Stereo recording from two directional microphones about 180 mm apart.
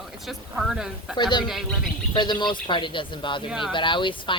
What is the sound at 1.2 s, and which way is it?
Speech, 25° left (ahead or behind).